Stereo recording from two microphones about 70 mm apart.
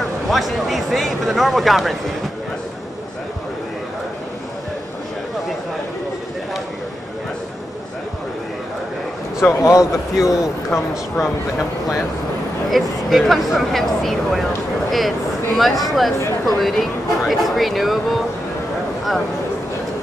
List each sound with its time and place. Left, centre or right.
0.3 s speech: centre
9.4 s speech: left
10.1 s speech: centre
12.7 s speech: centre